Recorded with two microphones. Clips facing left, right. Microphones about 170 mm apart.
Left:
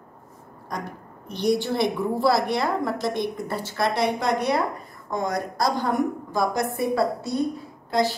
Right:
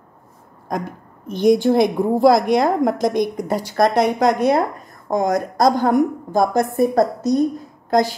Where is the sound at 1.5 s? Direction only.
45° right (ahead or behind).